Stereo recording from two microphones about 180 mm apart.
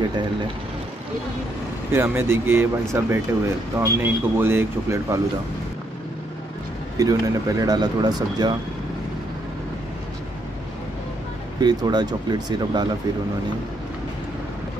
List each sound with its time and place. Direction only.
1.9 s speech: 15° right (ahead or behind)
7.0 s speech: 20° right (ahead or behind)
11.6 s speech: 25° right (ahead or behind)